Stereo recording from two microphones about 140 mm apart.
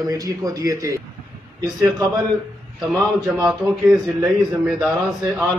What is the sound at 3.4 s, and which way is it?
A man's voice, 5° right (ahead or behind).